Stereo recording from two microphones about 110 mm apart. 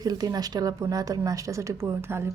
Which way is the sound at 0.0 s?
35° right (ahead or behind).